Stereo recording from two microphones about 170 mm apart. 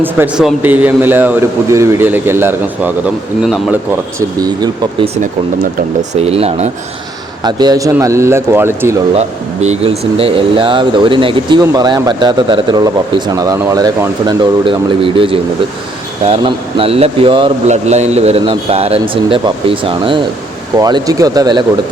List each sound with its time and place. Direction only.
0.0 s a man's voice: 5° right (ahead or behind)
4.4 s speech: 25° right (ahead or behind)
5.0 s speech: 40° right (ahead or behind)
7.4 s a man's voice: 25° right (ahead or behind)
9.1 s speech: 40° right (ahead or behind); by 21.6 s 25° right (ahead or behind)